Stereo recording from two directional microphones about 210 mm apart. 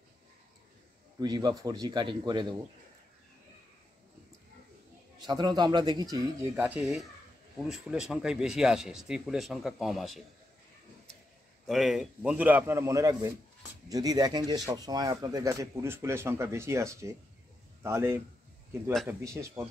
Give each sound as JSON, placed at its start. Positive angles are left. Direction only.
{"t": 1.2, "sound": "speech", "side_deg": -20}
{"t": 5.2, "sound": "speech", "side_deg": -20}
{"t": 11.6, "sound": "a man's voice", "side_deg": 0}